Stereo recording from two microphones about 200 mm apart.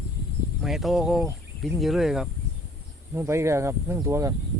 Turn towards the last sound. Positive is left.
turn(degrees=-15)  # may be behind; listen again after turning